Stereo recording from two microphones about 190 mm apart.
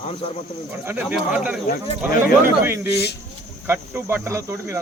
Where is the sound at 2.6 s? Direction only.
10° right (ahead or behind).